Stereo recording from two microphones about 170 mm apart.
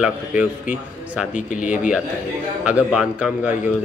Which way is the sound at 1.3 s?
50° left (ahead or behind).